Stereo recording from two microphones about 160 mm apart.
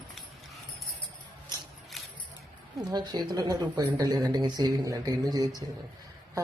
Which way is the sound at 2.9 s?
25° right (ahead or behind).